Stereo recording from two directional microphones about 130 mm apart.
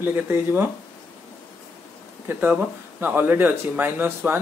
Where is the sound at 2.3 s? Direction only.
15° right (ahead or behind).